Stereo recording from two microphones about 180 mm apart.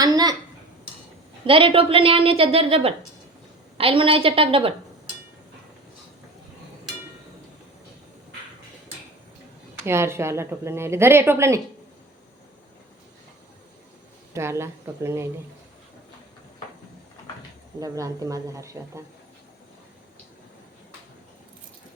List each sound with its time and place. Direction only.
0.0 s speech: 20° right (ahead or behind)
1.5 s a woman's voice: 30° right (ahead or behind)
9.8 s speech: 15° right (ahead or behind)
14.3 s speech: 15° right (ahead or behind)
17.7 s speech: 20° right (ahead or behind)